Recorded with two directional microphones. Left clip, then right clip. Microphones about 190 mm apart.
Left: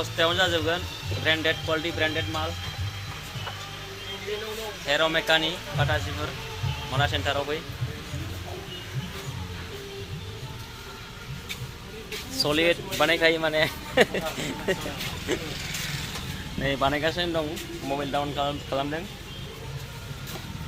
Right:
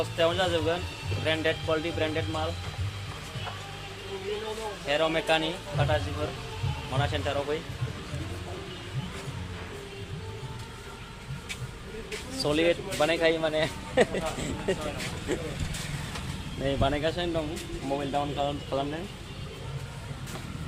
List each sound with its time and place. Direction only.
0.2 s speech: 10° left (ahead or behind)
4.9 s a man's voice: 5° left (ahead or behind)
12.3 s speech: 10° left (ahead or behind)
15.3 s speech: 15° left (ahead or behind)
16.6 s speech: 15° left (ahead or behind)